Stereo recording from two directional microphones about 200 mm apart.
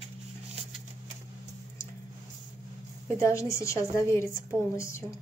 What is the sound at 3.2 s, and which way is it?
Speech, 15° left (ahead or behind).